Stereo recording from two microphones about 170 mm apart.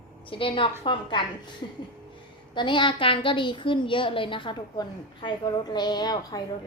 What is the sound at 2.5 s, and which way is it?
A woman's voice, 30° left (ahead or behind).